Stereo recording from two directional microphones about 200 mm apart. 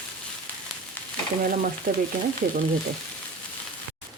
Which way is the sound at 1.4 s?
45° right (ahead or behind).